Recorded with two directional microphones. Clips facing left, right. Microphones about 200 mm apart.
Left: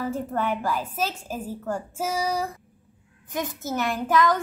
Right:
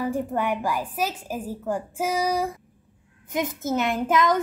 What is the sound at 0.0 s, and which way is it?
A child's voice, 15° right (ahead or behind).